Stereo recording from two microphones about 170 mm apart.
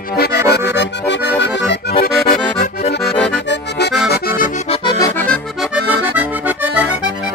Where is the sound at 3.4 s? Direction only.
90° left.